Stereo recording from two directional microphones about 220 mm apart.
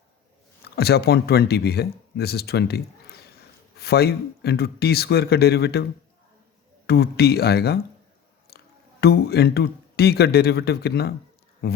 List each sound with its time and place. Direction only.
0.6 s speech: 45° left (ahead or behind)
6.8 s speech: 45° left (ahead or behind)
9.0 s speech: 45° left (ahead or behind)